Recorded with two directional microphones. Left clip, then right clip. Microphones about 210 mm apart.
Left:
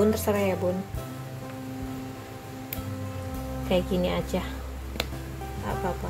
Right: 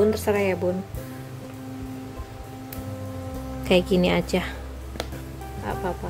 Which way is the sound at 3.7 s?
30° right (ahead or behind).